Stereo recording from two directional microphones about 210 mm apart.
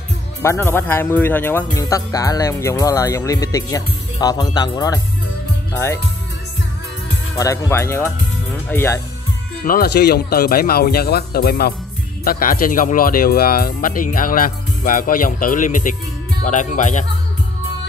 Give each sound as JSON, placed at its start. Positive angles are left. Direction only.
{"t": 0.4, "sound": "speech", "side_deg": 10}
{"t": 7.3, "sound": "speech", "side_deg": 15}
{"t": 9.7, "sound": "speech", "side_deg": 50}